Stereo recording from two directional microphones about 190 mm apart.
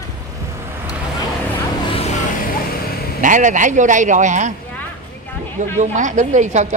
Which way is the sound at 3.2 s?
40° right (ahead or behind).